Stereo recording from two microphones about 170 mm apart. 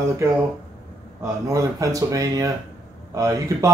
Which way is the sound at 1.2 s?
20° right (ahead or behind).